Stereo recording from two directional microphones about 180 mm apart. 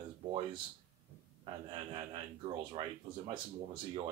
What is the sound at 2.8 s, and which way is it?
Speech, 30° right (ahead or behind).